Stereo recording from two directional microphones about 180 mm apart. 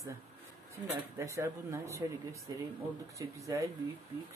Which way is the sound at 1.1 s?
15° right (ahead or behind).